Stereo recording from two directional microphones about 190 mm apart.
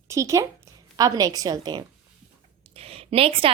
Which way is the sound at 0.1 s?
15° right (ahead or behind).